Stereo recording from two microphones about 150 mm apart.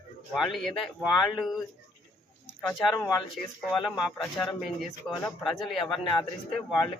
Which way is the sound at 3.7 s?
Centre (ahead or behind).